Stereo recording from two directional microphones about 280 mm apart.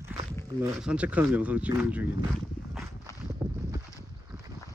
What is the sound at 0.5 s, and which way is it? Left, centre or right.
Speech, centre.